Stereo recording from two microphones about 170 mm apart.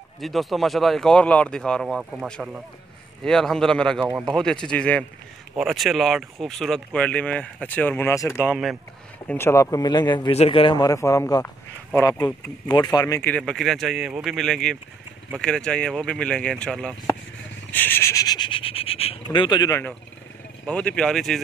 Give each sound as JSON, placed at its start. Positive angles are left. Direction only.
{"t": 0.2, "sound": "speech", "side_deg": 0}
{"t": 8.5, "sound": "speech", "side_deg": -5}
{"t": 9.3, "sound": "speech", "side_deg": 15}
{"t": 17.6, "sound": "rub", "side_deg": 10}
{"t": 20.6, "sound": "speech", "side_deg": 5}